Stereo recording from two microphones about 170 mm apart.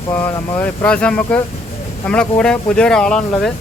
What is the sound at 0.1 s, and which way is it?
Speech, 10° left (ahead or behind).